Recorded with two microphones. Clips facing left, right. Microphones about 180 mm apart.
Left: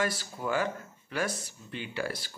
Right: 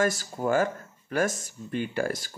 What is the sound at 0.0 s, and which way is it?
Speech, 45° right (ahead or behind).